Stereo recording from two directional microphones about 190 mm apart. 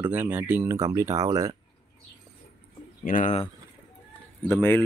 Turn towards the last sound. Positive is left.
turn(degrees=10)  # may be behind; listen again after turning